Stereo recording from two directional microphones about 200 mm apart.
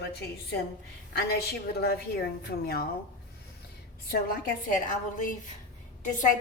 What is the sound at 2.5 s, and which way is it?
Speech, 50° left (ahead or behind).